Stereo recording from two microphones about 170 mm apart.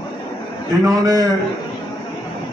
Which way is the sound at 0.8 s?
20° right (ahead or behind).